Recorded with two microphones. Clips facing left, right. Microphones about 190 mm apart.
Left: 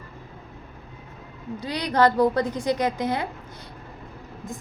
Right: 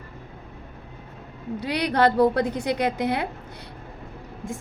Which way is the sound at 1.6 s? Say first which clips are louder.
Even; 60° right (ahead or behind).